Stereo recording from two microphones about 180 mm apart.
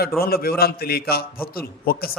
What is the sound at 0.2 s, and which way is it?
A man's voice, 55° left (ahead or behind).